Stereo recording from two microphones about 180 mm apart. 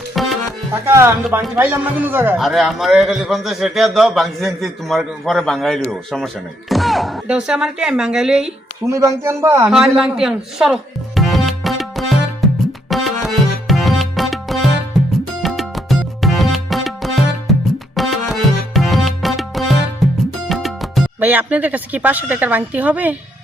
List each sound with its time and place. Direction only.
0.1 s music: centre (ahead or behind)
0.9 s a man's voice: 15° right (ahead or behind)
2.4 s a man's voice: centre (ahead or behind)
8.9 s a man's voice: 15° right (ahead or behind)
9.7 s music: 5° right (ahead or behind)
20.5 s speech: centre (ahead or behind)